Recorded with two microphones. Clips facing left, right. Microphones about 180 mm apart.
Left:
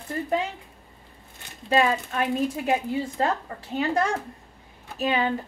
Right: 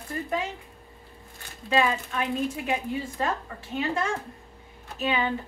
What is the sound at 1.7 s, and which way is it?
Speech, 40° left (ahead or behind).